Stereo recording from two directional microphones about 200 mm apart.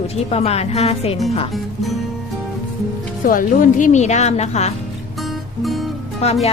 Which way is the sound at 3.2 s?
45° left (ahead or behind).